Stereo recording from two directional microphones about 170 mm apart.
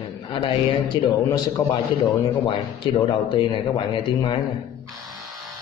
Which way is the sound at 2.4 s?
30° left (ahead or behind).